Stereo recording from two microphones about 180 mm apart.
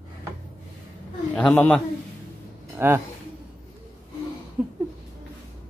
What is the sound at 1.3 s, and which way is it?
Speech, 5° left (ahead or behind).